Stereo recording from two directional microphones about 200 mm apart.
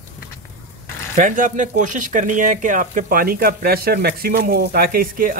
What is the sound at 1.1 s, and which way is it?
Speech, 40° right (ahead or behind).